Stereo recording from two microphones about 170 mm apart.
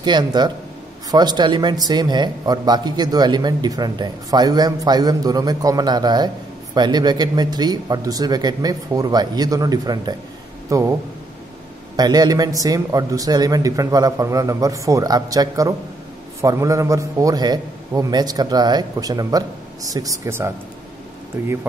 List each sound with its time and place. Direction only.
0.0 s a man's voice: 25° right (ahead or behind)
12.0 s a man's voice: 25° right (ahead or behind)